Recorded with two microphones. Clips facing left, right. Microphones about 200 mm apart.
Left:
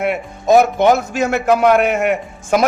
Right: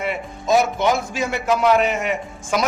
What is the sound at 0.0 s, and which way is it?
A man's voice, 60° left (ahead or behind).